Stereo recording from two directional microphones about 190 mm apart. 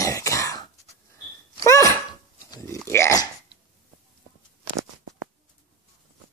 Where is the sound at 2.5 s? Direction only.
15° left (ahead or behind).